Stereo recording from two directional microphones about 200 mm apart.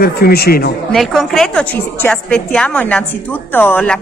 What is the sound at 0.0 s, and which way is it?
Speech, 50° left (ahead or behind).